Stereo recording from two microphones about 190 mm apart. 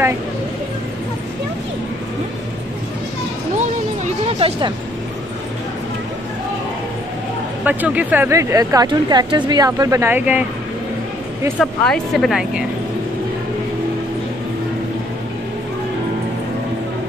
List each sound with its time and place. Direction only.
3.5 s music: 35° right (ahead or behind)
7.6 s speech: 10° right (ahead or behind)
11.6 s speech: 5° left (ahead or behind)